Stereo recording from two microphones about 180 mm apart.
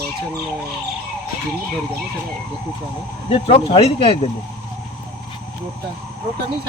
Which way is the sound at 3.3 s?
30° left (ahead or behind).